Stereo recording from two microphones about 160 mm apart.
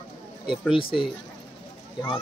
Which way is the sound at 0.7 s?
35° left (ahead or behind).